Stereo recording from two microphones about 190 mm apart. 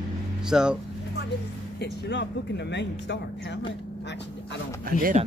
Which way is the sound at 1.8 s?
65° left (ahead or behind).